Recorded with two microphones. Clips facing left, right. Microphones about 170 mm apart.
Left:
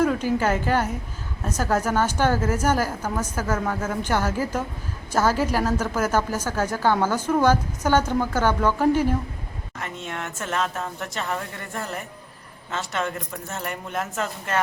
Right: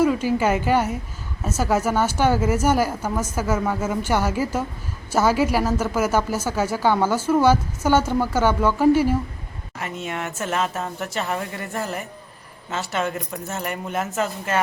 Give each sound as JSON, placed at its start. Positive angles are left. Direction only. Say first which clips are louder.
{"t": 0.0, "sound": "a woman's voice", "louder": "right 2 dB", "side_deg": -5}